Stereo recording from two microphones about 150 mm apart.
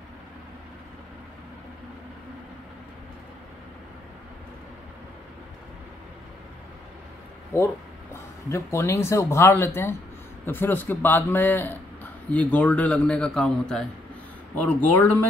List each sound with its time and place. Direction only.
7.5 s a man's voice: 15° left (ahead or behind)